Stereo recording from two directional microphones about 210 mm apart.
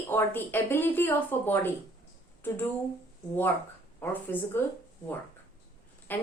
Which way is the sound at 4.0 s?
10° left (ahead or behind).